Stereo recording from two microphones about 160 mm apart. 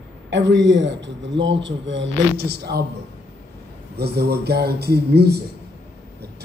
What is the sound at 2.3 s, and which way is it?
Speech, 80° right.